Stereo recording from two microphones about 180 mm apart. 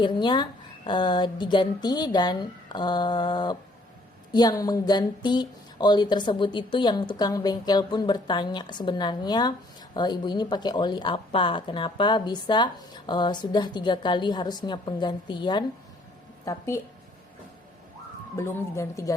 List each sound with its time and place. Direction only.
0.0 s speech: 25° left (ahead or behind)
18.3 s speech: 15° left (ahead or behind)